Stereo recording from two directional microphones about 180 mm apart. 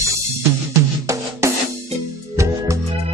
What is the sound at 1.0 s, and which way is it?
Music, 15° right (ahead or behind).